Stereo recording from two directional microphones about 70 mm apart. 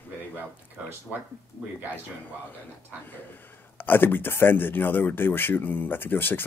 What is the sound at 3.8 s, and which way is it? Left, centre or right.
Speech, left.